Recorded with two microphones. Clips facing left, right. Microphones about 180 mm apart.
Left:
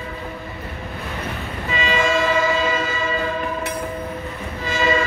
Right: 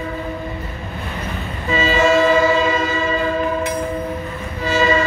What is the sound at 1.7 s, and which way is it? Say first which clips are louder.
Train: right 5 dB; 40° right (ahead or behind).